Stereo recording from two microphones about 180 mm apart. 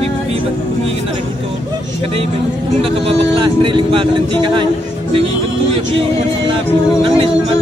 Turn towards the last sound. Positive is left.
turn(degrees=-30)  # may be behind; listen again after turning